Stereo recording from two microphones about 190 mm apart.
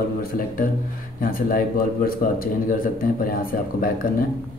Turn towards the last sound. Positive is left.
turn(degrees=50)  # may be behind; listen again after turning